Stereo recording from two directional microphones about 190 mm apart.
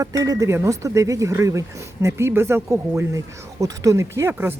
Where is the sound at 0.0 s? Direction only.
20° right (ahead or behind).